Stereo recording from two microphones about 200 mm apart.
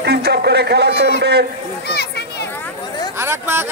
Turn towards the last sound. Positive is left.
turn(degrees=-10)  # may be behind; listen again after turning